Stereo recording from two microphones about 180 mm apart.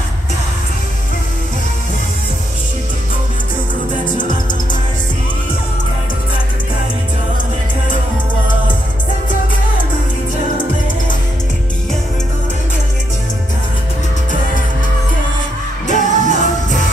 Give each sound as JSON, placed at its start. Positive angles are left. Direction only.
{"t": 15.9, "sound": "music", "side_deg": 45}